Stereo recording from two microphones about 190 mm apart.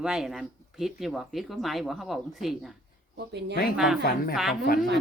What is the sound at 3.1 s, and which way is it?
Speech, 65° right (ahead or behind).